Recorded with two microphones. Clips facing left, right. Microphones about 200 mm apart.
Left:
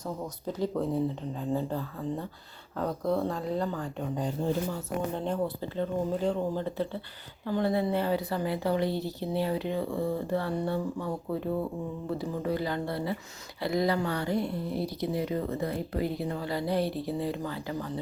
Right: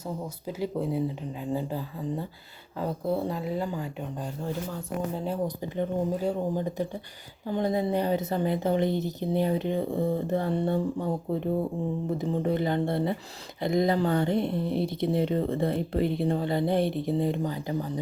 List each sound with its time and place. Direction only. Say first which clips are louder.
0.4 s speech: even; 10° right (ahead or behind)
3.2 s speech: even; 5° right (ahead or behind)